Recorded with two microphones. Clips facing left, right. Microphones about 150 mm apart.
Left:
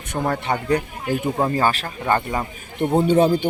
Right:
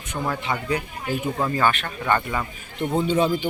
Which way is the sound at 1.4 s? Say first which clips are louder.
Left 1 dB; 35° left (ahead or behind).